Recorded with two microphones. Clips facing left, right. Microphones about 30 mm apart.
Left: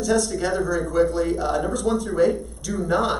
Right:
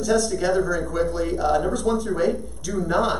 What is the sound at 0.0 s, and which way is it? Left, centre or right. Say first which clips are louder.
Speech: right 1 dB; centre.